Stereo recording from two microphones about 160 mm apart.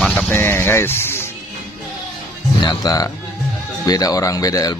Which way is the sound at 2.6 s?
25° left (ahead or behind).